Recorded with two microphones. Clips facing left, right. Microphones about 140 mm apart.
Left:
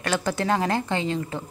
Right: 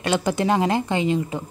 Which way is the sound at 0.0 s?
20° right (ahead or behind).